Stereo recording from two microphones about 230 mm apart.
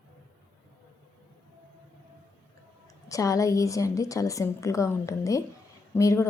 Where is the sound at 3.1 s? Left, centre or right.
Centre.